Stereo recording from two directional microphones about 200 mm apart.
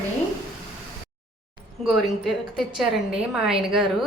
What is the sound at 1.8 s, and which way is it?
A woman's voice, centre (ahead or behind).